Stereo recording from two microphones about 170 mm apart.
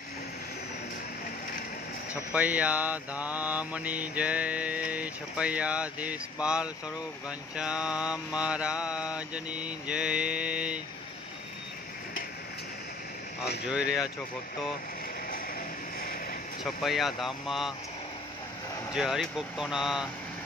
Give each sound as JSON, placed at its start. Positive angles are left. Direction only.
{"t": 2.3, "sound": "mantra", "side_deg": -10}
{"t": 16.0, "sound": "vehicle", "side_deg": 60}
{"t": 16.6, "sound": "speech", "side_deg": 0}
{"t": 18.9, "sound": "speech", "side_deg": -5}